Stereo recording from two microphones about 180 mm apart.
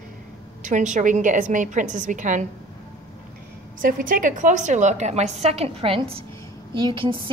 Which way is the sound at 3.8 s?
50° right (ahead or behind).